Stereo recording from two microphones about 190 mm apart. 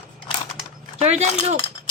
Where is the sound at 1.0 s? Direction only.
35° right (ahead or behind).